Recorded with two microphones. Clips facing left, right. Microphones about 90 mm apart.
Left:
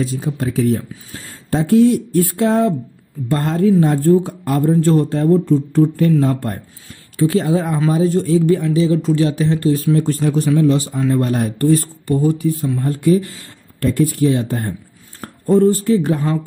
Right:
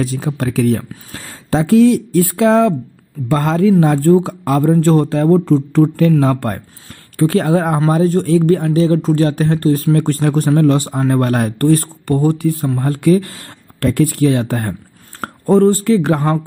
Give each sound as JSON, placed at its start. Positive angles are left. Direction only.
{"t": 0.0, "sound": "speech", "side_deg": -70}
{"t": 3.8, "sound": "speech", "side_deg": -85}
{"t": 7.2, "sound": "speech", "side_deg": -55}
{"t": 7.8, "sound": "speech", "side_deg": -50}
{"t": 9.9, "sound": "a man's voice", "side_deg": -55}